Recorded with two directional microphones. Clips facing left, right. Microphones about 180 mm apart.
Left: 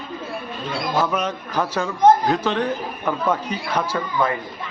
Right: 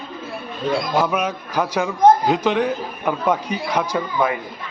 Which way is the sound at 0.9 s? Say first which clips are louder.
Right 2 dB; 10° right (ahead or behind).